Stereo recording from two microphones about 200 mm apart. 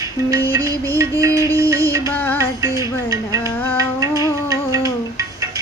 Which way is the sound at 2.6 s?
15° right (ahead or behind).